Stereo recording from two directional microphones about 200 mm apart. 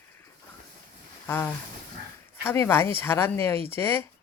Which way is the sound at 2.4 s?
10° left (ahead or behind).